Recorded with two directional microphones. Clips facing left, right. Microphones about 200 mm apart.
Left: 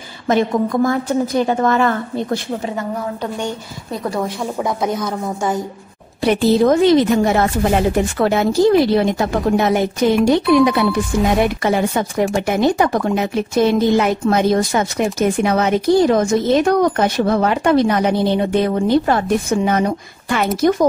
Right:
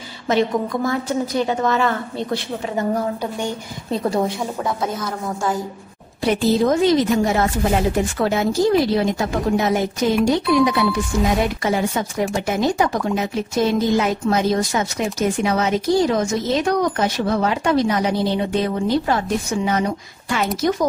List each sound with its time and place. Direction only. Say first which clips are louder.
0.3 s a woman's voice: left 3 dB; 50° left (ahead or behind)
3.9 s a woman's voice: right 2 dB; 25° right (ahead or behind)
4.6 s a woman's voice: left 5 dB; 15° left (ahead or behind)
6.2 s speech: left 4 dB; 65° left (ahead or behind)